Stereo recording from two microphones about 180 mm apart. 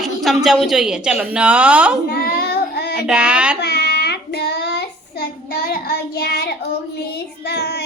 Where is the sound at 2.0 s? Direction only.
55° left (ahead or behind).